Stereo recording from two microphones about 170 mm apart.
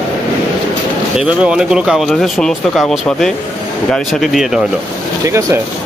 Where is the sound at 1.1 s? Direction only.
5° right (ahead or behind).